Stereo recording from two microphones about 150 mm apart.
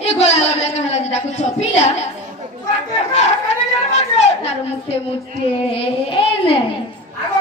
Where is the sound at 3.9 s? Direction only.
50° left (ahead or behind).